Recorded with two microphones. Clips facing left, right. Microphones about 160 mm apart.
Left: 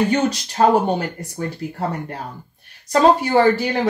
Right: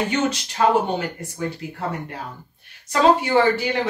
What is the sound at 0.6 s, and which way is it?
Speech, 40° left (ahead or behind).